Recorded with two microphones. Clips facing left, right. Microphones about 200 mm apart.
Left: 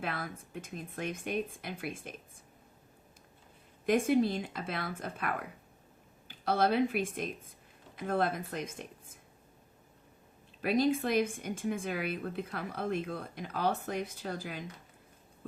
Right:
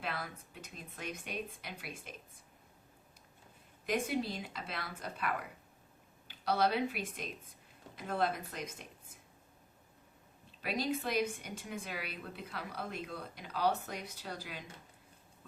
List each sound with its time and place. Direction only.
0.0 s a woman's voice: 50° left (ahead or behind)
3.8 s a woman's voice: 50° left (ahead or behind)
10.6 s a woman's voice: 50° left (ahead or behind)